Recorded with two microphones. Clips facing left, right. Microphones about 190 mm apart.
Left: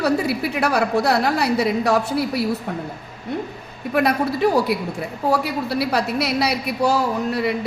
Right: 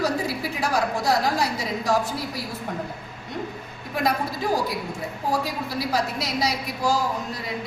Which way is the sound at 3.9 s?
65° left (ahead or behind).